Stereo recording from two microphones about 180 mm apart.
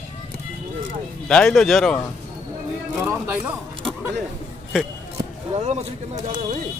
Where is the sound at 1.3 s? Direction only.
5° left (ahead or behind).